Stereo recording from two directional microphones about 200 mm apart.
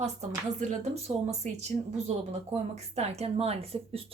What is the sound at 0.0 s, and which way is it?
Speech, 35° right (ahead or behind).